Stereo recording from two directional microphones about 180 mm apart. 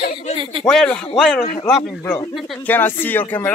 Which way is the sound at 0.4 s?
30° right (ahead or behind).